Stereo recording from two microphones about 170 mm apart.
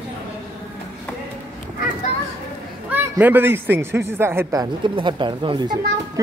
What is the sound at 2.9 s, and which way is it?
A man's voice, 10° right (ahead or behind).